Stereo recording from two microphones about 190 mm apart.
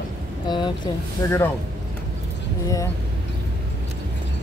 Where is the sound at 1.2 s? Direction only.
15° left (ahead or behind).